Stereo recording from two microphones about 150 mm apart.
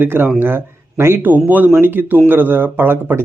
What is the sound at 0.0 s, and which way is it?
Speech, 15° right (ahead or behind).